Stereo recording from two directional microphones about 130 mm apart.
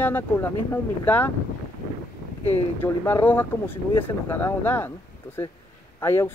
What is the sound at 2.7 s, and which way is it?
Speech, 15° left (ahead or behind).